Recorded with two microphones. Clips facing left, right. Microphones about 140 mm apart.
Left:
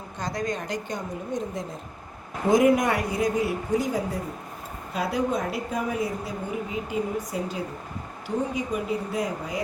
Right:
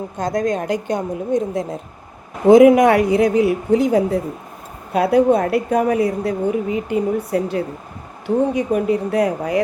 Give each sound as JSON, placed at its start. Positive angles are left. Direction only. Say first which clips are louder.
{"t": 0.2, "sound": "a woman's voice", "louder": "right 9 dB", "side_deg": -50}